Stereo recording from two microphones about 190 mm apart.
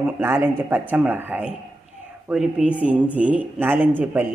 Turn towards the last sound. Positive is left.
turn(degrees=-10)  # may be behind; listen again after turning